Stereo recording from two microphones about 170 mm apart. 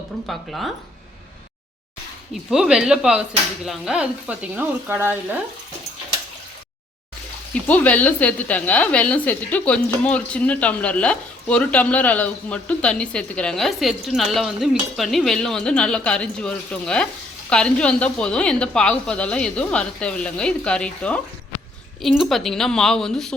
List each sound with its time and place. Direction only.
0.3 s speech: centre (ahead or behind)
2.5 s speech: 5° right (ahead or behind)
7.7 s a woman's voice: 10° left (ahead or behind)